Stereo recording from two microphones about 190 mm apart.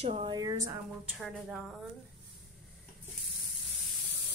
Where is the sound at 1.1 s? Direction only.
Centre (ahead or behind).